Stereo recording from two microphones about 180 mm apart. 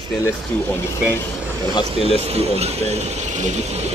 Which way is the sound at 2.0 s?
35° right (ahead or behind).